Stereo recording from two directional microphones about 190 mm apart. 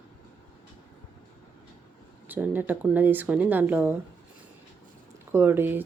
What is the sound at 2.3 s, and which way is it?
Speech, 10° right (ahead or behind).